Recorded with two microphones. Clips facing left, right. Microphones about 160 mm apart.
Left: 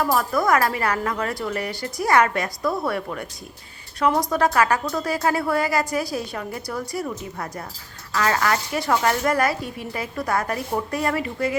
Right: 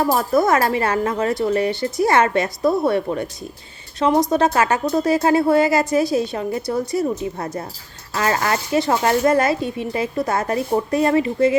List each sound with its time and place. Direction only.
0.0 s speech: 30° right (ahead or behind)